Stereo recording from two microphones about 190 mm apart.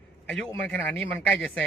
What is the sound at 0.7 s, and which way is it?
Speech, 5° left (ahead or behind).